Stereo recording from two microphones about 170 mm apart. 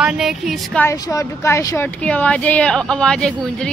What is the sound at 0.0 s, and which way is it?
Speech, 5° right (ahead or behind).